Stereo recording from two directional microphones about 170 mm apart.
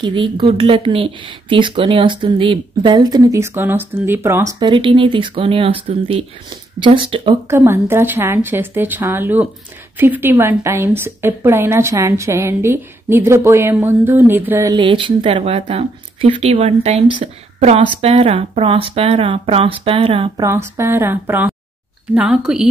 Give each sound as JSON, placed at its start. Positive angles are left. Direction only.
{"t": 0.0, "sound": "speech", "side_deg": -30}
{"t": 7.4, "sound": "a woman's voice", "side_deg": -15}
{"t": 14.8, "sound": "speech", "side_deg": -30}
{"t": 20.3, "sound": "a woman's voice", "side_deg": -15}